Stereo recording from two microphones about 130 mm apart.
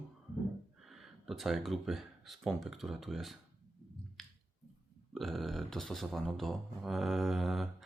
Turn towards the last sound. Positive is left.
turn(degrees=0)  # may be behind; listen again after turning